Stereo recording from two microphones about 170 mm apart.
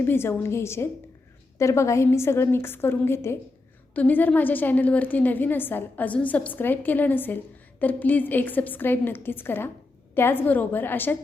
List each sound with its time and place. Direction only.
0.0 s a woman's voice: 15° left (ahead or behind)